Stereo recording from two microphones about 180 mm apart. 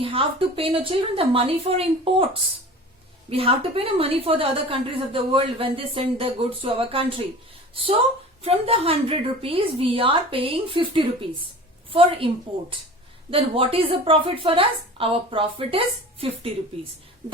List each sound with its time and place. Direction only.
0.0 s a woman's voice: 30° right (ahead or behind)
8.4 s a woman's voice: 30° right (ahead or behind)
13.3 s a woman's voice: 30° right (ahead or behind)